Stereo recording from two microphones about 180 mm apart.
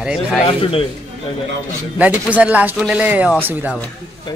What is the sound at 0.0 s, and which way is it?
Speech, 5° right (ahead or behind).